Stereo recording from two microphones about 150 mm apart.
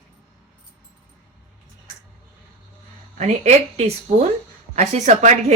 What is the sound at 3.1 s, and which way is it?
A woman's voice, 50° right (ahead or behind).